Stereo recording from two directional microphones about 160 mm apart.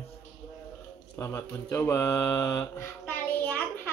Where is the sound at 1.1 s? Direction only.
15° left (ahead or behind).